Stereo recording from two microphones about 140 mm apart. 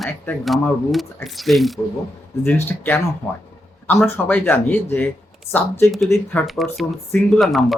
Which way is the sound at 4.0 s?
10° left (ahead or behind).